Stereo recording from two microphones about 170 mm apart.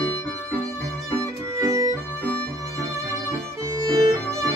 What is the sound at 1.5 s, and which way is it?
Music, 20° right (ahead or behind).